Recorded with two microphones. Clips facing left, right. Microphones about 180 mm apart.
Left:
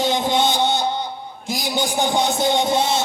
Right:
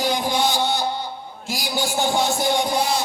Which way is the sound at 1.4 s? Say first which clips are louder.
Left 2 dB; 20° left (ahead or behind).